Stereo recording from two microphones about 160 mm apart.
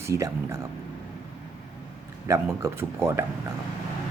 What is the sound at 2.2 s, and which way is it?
Speech, 20° right (ahead or behind).